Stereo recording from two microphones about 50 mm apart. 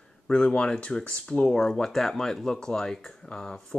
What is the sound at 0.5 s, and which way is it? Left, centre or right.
Speech, left.